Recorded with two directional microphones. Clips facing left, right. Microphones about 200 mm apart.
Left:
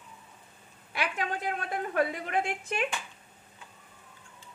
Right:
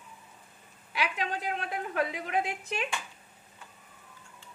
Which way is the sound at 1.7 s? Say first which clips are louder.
Left 4 dB; 50° left (ahead or behind).